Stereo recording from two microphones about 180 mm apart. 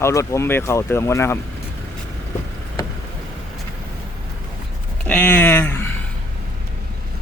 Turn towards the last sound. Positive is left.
turn(degrees=10)  # may be behind; listen again after turning